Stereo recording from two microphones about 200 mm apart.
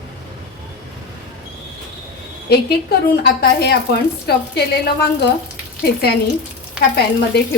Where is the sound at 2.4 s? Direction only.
50° left (ahead or behind).